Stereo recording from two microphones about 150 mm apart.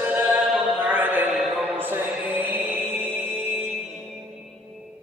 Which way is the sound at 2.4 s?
10° right (ahead or behind).